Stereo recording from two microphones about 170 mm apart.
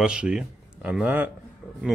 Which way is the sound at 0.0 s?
5° right (ahead or behind).